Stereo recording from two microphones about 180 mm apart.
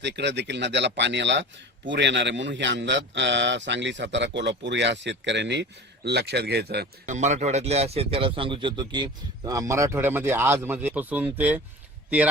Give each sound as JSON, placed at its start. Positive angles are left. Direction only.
{"t": 0.0, "sound": "a man's voice", "side_deg": -75}
{"t": 7.0, "sound": "speech", "side_deg": -40}